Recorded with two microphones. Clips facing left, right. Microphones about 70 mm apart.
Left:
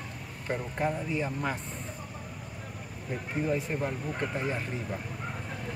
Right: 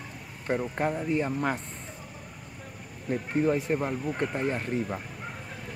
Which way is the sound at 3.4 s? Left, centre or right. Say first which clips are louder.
Right 4 dB; right.